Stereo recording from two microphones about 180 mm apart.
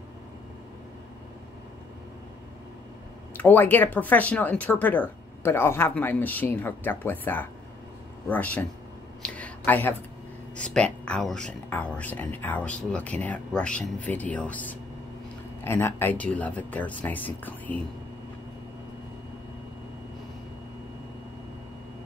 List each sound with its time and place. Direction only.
3.3 s speech: 10° left (ahead or behind)
9.2 s a sound: 10° left (ahead or behind)
10.5 s speech: 5° left (ahead or behind)